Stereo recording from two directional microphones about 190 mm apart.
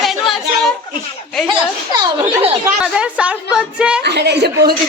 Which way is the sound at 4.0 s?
60° right (ahead or behind).